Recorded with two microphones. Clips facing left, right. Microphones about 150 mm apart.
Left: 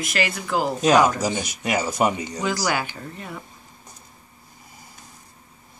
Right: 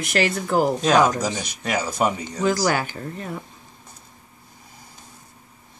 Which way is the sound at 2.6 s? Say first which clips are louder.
Right 3 dB; 40° right (ahead or behind).